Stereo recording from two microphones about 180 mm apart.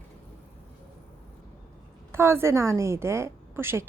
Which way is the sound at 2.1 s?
15° right (ahead or behind).